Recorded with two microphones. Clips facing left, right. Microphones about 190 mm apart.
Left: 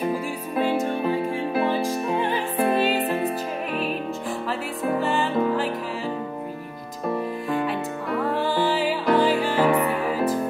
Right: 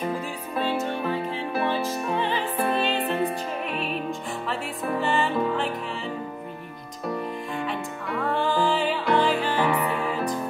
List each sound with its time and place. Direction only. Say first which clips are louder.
0.6 s music: left 3 dB; 15° left (ahead or behind)
5.0 s music: even; centre (ahead or behind)
8.3 s music: right 1 dB; 5° left (ahead or behind)
9.6 s music: left 7 dB; 45° left (ahead or behind)